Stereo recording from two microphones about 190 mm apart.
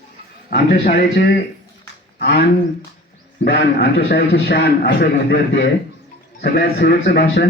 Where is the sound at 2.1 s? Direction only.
50° left (ahead or behind).